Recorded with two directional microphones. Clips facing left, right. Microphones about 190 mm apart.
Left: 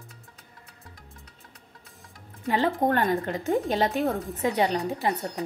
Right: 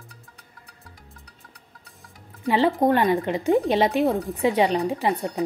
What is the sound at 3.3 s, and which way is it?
Speech, 15° right (ahead or behind).